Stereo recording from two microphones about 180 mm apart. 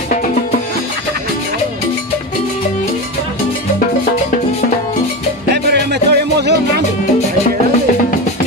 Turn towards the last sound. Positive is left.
turn(degrees=-65)  # may be behind; listen again after turning